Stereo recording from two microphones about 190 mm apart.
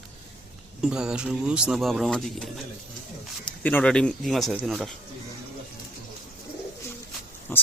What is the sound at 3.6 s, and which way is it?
Speech, 10° left (ahead or behind).